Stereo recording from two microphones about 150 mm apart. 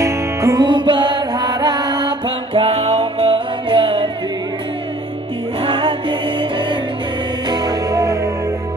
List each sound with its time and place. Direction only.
0.0 s music: 20° right (ahead or behind)
2.5 s music: 40° right (ahead or behind)
5.6 s music: 35° right (ahead or behind); by 8.3 s 20° right (ahead or behind)